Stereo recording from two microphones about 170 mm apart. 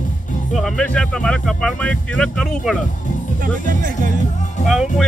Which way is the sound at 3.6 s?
55° right (ahead or behind).